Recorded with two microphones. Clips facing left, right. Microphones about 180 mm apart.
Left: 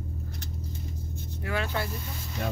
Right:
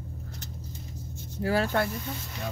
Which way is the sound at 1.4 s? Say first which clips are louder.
Right 6 dB; 35° right (ahead or behind).